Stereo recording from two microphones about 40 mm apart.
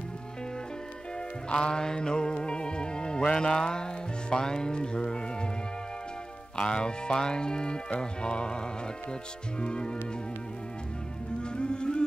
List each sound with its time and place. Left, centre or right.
1.5 s music: left
6.5 s speech: left
11.4 s music: left